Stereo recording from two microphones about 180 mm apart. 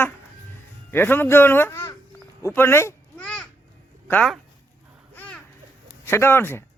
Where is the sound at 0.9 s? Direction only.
10° left (ahead or behind).